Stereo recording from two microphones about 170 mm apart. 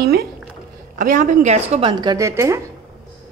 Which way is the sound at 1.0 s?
55° right (ahead or behind).